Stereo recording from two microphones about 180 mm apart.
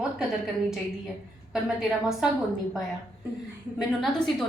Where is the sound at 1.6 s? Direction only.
Centre (ahead or behind).